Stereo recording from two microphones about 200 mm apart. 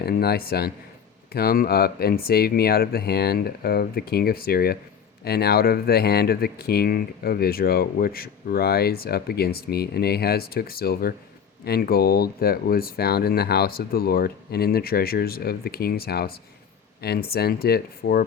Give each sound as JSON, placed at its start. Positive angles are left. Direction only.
{"t": 0.0, "sound": "speech", "side_deg": 50}